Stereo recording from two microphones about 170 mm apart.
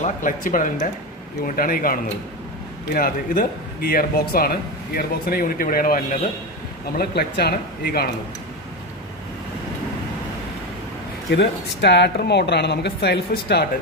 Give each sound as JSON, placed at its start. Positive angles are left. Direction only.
{"t": 0.0, "sound": "speech", "side_deg": 50}
{"t": 7.0, "sound": "speech", "side_deg": 70}
{"t": 11.2, "sound": "speech", "side_deg": 85}